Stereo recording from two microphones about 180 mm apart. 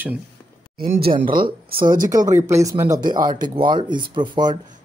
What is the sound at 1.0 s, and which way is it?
Speech, 50° right (ahead or behind).